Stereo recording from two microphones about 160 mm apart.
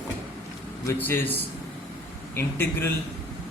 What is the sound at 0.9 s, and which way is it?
A man's voice, 15° left (ahead or behind).